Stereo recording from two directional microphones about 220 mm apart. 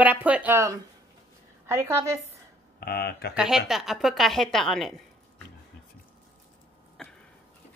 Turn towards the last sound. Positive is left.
turn(degrees=0)  # may be behind; listen again after turning